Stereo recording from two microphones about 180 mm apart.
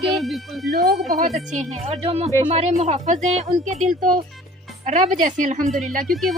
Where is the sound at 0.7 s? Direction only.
60° right (ahead or behind).